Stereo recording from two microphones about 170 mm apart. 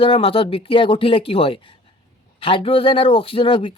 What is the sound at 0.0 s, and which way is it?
Speech, 30° left (ahead or behind).